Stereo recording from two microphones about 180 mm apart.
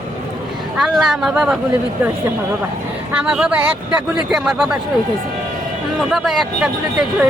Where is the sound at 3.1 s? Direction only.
5° right (ahead or behind).